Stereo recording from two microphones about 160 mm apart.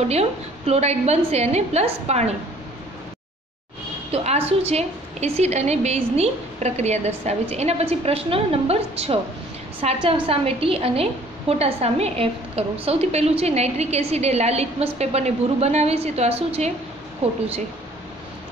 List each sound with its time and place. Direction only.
0.1 s a woman's voice: 40° right (ahead or behind)
4.1 s a woman's voice: 40° right (ahead or behind)